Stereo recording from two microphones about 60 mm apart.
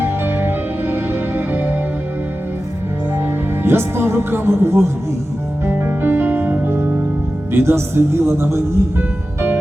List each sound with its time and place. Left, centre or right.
0.0 s music: right
3.2 s speech: right
5.6 s music: right
7.5 s speech: right